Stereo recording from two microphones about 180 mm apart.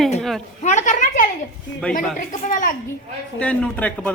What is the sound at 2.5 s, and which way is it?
Speech, 45° left (ahead or behind).